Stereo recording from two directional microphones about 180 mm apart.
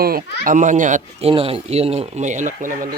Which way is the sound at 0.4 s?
45° right (ahead or behind).